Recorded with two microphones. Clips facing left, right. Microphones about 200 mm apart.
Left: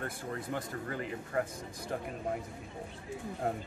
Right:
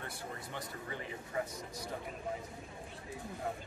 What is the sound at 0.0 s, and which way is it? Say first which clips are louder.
Speech: left 6 dB; 50° left (ahead or behind).